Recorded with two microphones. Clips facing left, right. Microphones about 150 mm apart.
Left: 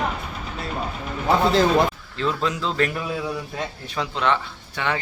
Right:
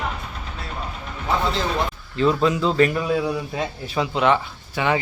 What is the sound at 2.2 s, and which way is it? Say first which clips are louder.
A man's voice: right 6 dB; 5° right (ahead or behind).